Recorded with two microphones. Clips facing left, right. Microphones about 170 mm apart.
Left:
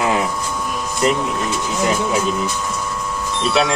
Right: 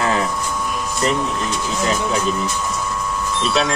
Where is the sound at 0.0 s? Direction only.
15° left (ahead or behind).